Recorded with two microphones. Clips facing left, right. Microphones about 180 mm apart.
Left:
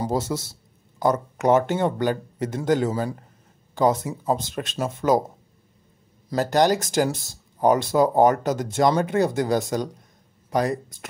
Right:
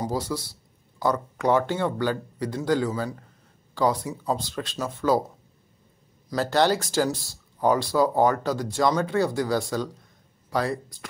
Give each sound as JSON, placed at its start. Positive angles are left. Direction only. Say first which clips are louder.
{"t": 0.0, "sound": "speech", "louder": "left 3 dB", "side_deg": 25}
{"t": 6.2, "sound": "speech", "louder": "left 2 dB", "side_deg": 15}